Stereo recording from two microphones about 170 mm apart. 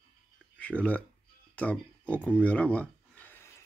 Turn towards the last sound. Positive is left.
turn(degrees=10)  # may be behind; listen again after turning